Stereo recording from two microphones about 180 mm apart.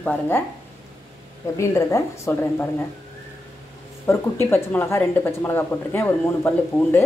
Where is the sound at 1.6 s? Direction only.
15° left (ahead or behind).